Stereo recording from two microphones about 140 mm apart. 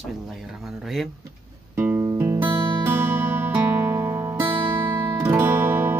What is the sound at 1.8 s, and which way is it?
Music, 15° right (ahead or behind).